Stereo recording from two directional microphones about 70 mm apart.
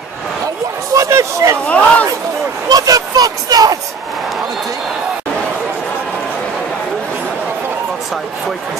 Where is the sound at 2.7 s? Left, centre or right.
Right.